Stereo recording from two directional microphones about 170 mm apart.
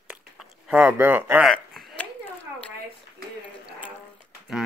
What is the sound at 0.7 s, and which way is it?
Speech, 10° right (ahead or behind).